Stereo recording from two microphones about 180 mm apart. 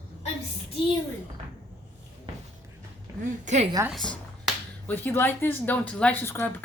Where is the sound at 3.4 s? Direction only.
40° right (ahead or behind).